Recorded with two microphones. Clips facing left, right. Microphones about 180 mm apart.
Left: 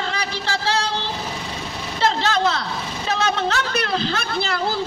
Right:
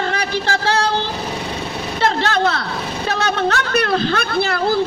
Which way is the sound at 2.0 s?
55° right (ahead or behind).